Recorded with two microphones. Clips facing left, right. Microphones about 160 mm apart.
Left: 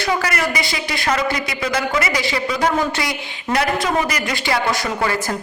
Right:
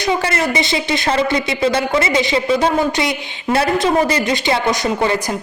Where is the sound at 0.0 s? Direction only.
25° right (ahead or behind).